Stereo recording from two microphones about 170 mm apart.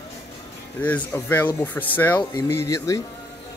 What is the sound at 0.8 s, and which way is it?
Speech, 10° left (ahead or behind).